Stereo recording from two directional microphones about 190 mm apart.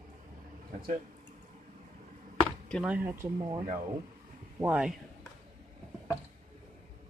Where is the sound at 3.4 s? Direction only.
25° right (ahead or behind).